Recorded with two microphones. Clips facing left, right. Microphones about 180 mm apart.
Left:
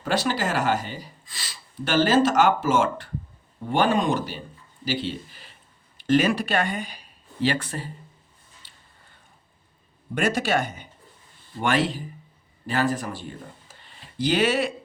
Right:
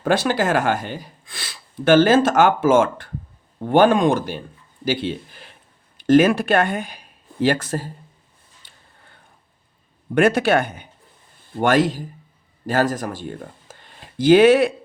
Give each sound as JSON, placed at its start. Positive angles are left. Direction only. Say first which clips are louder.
{"t": 0.0, "sound": "speech", "louder": "right 6 dB", "side_deg": -55}
{"t": 10.2, "sound": "speech", "louder": "right 7 dB", "side_deg": -60}
{"t": 11.5, "sound": "speech", "louder": "right 6 dB", "side_deg": -45}